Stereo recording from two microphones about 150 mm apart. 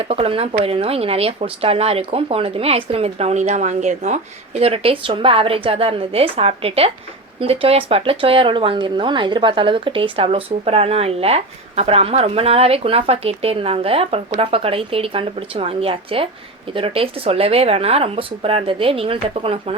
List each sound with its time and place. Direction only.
0.0 s speech: 40° right (ahead or behind)